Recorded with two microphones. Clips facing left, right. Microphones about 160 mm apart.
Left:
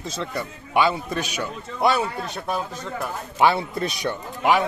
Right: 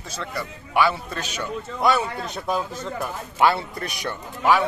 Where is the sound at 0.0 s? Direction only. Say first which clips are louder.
Left 2 dB; 20° left (ahead or behind).